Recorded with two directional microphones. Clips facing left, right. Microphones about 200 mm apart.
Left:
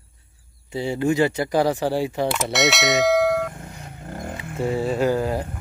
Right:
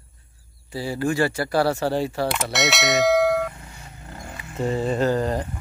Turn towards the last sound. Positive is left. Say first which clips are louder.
# left 1 dB
turn(degrees=10)  # may be behind; listen again after turning